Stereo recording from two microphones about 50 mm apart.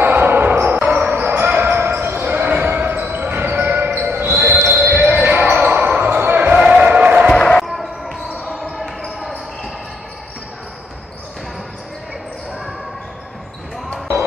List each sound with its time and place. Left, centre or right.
0.0 s basketball bounce: right
6.8 s a sound: right
7.3 s basketball bounce: centre
7.6 s basketball bounce: centre